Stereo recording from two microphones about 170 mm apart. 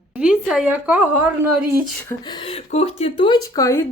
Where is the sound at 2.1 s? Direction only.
25° left (ahead or behind).